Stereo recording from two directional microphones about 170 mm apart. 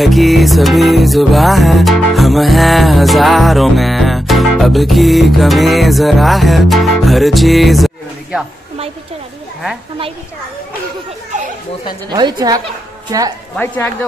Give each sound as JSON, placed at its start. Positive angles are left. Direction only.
{"t": 0.0, "sound": "music", "side_deg": 0}
{"t": 12.1, "sound": "a woman's voice", "side_deg": -25}
{"t": 13.6, "sound": "speech", "side_deg": 10}